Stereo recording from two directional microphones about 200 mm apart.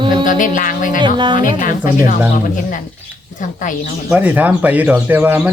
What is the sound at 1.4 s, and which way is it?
Speech, 40° left (ahead or behind).